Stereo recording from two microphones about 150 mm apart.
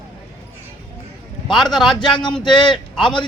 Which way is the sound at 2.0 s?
30° left (ahead or behind).